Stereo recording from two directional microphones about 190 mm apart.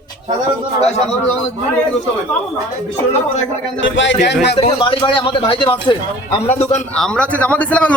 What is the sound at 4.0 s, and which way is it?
Speech, 70° left (ahead or behind).